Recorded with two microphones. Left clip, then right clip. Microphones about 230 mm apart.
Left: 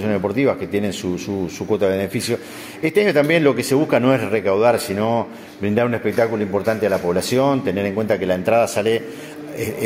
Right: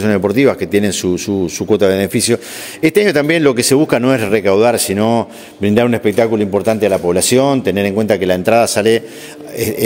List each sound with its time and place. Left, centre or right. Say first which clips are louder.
0.0 s speech: right 7 dB; right